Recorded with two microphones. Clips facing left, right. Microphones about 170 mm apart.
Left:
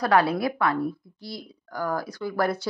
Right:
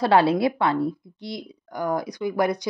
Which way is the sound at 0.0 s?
25° right (ahead or behind).